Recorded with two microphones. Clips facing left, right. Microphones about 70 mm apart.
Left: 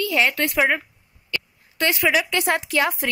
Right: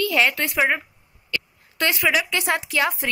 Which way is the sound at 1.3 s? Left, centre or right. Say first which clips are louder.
Right 1 dB; left.